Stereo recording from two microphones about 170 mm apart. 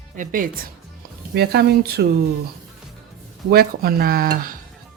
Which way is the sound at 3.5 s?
60° right (ahead or behind).